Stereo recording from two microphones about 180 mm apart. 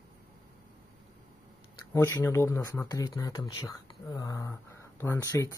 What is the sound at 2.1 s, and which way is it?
Speech, 15° left (ahead or behind).